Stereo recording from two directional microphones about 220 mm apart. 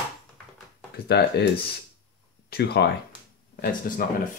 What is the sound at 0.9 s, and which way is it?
Speech, 50° left (ahead or behind).